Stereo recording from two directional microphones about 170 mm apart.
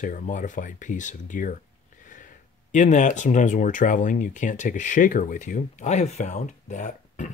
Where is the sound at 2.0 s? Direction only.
50° left (ahead or behind).